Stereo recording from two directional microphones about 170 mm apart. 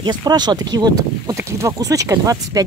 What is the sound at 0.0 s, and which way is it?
Speech, 25° right (ahead or behind).